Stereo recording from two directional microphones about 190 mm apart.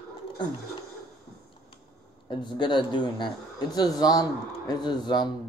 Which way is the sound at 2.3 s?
25° left (ahead or behind).